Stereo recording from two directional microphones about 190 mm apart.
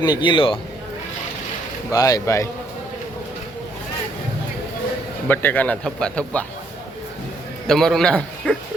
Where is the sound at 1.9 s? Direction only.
20° left (ahead or behind).